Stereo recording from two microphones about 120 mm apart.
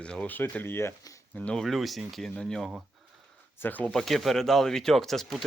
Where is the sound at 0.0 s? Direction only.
10° left (ahead or behind).